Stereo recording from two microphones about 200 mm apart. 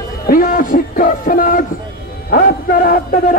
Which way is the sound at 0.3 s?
45° left (ahead or behind).